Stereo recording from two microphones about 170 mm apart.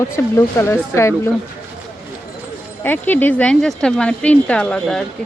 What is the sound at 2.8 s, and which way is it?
Speech, 10° left (ahead or behind).